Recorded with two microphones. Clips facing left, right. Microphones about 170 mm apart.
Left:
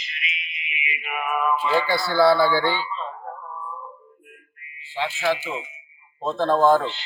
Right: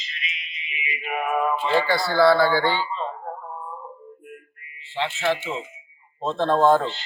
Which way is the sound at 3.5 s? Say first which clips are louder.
Even; 35° right (ahead or behind).